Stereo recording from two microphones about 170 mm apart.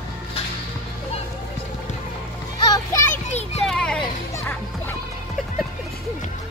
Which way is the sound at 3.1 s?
40° left (ahead or behind).